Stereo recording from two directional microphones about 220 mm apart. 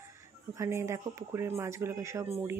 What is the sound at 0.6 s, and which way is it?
Speech, 15° right (ahead or behind).